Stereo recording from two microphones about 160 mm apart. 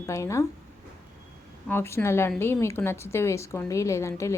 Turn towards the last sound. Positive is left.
turn(degrees=15)  # may be behind; listen again after turning